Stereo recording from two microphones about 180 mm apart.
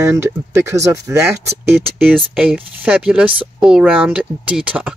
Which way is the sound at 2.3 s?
10° right (ahead or behind).